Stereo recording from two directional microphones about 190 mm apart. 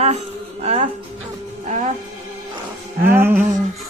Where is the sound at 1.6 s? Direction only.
40° right (ahead or behind).